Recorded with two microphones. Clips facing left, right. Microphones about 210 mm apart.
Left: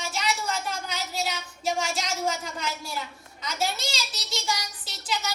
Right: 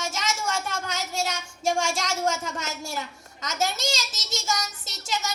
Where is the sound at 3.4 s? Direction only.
45° right (ahead or behind).